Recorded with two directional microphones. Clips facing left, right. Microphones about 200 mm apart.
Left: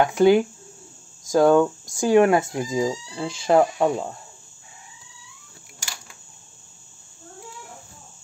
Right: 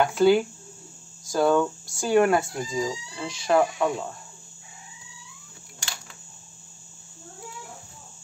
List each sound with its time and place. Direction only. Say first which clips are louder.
0.0 s speech: left 3 dB; 15° left (ahead or behind)